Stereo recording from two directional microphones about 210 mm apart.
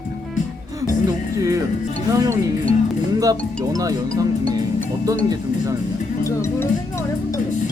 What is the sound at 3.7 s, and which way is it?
Speech, 15° right (ahead or behind).